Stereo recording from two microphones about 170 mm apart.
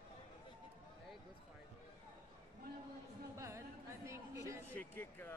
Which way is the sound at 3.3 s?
15° right (ahead or behind).